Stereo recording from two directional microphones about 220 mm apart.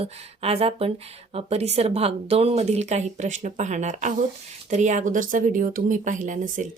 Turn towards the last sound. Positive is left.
turn(degrees=-35)  # may be behind; listen again after turning